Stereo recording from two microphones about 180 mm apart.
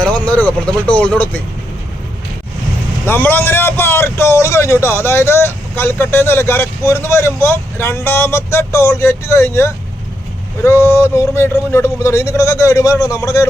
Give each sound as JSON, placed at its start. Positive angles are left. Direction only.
{"t": 0.0, "sound": "a man's voice", "side_deg": 5}
{"t": 3.1, "sound": "a man's voice", "side_deg": 10}